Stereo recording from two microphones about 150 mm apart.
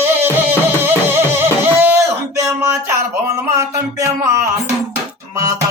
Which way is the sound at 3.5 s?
20° right (ahead or behind).